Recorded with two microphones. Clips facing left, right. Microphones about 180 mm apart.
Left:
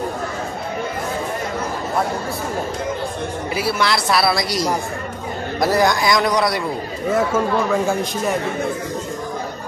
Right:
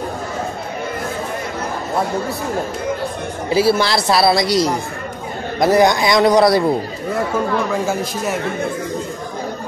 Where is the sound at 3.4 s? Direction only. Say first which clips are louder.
Right 7 dB; 30° right (ahead or behind).